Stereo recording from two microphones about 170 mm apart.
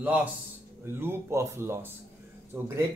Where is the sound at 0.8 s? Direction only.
15° right (ahead or behind).